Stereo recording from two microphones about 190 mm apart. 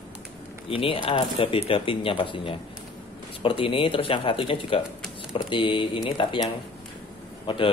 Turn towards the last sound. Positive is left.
turn(degrees=25)  # may be behind; listen again after turning